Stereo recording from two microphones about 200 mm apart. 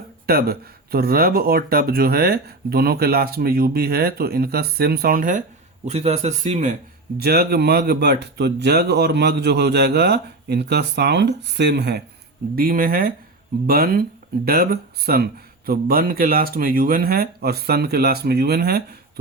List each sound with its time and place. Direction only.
0.3 s speech: 50° right (ahead or behind)
7.2 s speech: 55° right (ahead or behind)
12.5 s speech: 45° right (ahead or behind)